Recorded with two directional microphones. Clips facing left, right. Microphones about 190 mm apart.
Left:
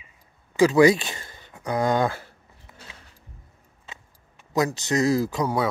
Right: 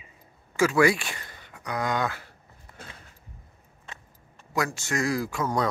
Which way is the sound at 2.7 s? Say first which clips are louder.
Right 3 dB; 5° left (ahead or behind).